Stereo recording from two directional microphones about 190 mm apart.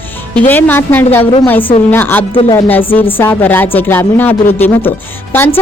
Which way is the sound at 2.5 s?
10° left (ahead or behind).